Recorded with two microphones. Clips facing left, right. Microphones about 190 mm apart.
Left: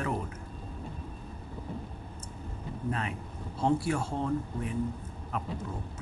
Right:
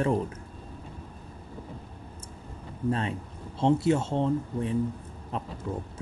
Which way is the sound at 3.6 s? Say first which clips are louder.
Right 5 dB; 25° right (ahead or behind).